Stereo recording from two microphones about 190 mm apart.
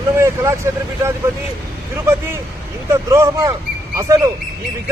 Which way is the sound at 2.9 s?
15° right (ahead or behind).